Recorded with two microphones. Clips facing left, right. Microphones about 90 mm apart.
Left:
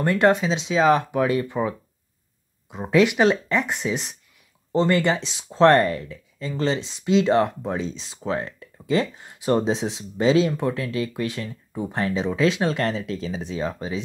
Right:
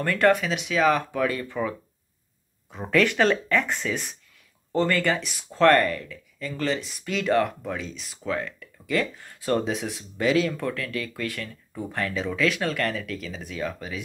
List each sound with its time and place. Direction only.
0.0 s speech: 20° left (ahead or behind)